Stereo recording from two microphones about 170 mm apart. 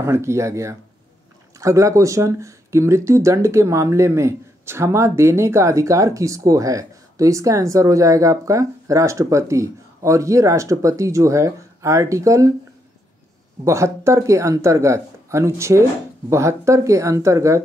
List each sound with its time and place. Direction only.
0.0 s speech: 15° right (ahead or behind)
13.7 s speech: 15° right (ahead or behind)